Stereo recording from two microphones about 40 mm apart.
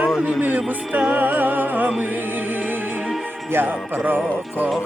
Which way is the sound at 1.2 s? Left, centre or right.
Right.